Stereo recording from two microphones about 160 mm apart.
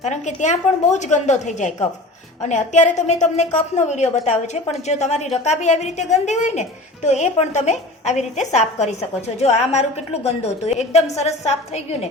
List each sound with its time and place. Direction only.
0.0 s a woman's voice: 45° left (ahead or behind)